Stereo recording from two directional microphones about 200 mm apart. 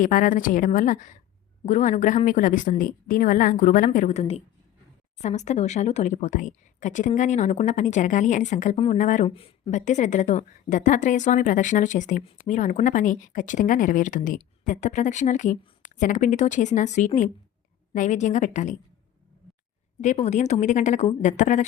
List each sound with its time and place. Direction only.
0.0 s a woman's voice: 40° left (ahead or behind)
9.2 s a woman's voice: 30° left (ahead or behind)
20.0 s a woman's voice: 35° left (ahead or behind)